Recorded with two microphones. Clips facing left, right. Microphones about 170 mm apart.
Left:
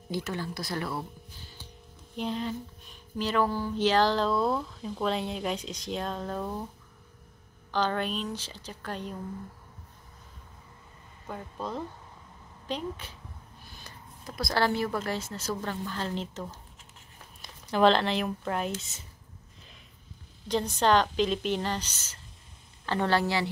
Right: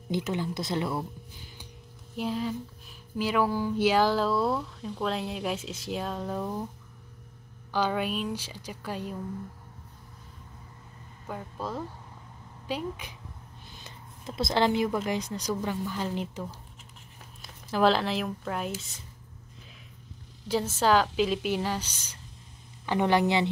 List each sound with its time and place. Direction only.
0.1 s speech: 20° right (ahead or behind)
2.1 s speech: 5° right (ahead or behind)
7.7 s a woman's voice: 10° right (ahead or behind)
11.2 s a woman's voice: 5° right (ahead or behind)
13.7 s speech: 20° right (ahead or behind); by 18.9 s centre (ahead or behind)
20.4 s a woman's voice: 5° right (ahead or behind)